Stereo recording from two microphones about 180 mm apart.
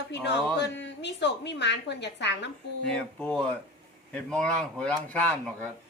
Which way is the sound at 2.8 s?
5° left (ahead or behind).